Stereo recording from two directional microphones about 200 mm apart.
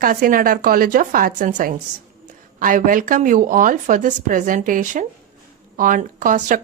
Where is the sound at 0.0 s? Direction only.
45° right (ahead or behind).